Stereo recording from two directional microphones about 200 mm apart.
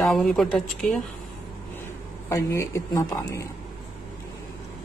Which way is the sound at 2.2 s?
15° left (ahead or behind).